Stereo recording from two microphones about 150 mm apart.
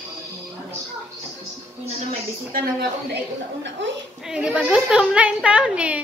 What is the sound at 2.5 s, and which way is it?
Speech, 90° right.